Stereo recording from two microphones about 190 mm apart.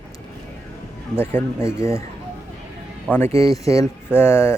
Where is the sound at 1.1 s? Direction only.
15° left (ahead or behind).